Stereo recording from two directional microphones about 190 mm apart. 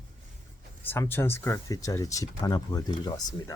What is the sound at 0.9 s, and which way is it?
Speech, 10° left (ahead or behind).